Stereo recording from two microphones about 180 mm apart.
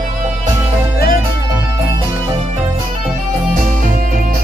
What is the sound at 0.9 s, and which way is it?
Music, 55° left (ahead or behind).